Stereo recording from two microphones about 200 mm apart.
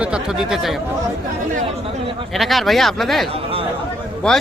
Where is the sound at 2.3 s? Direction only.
Centre (ahead or behind).